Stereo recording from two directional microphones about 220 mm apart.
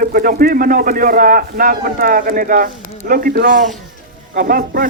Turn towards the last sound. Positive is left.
turn(degrees=-40)  # may be behind; listen again after turning